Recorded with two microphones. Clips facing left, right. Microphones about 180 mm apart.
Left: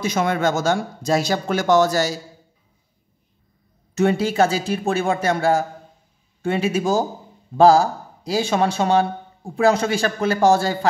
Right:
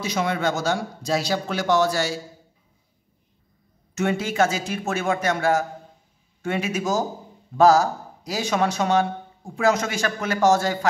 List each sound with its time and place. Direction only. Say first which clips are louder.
0.0 s a man's voice: left 4 dB; 50° left (ahead or behind)
3.9 s speech: left 5 dB; 35° left (ahead or behind)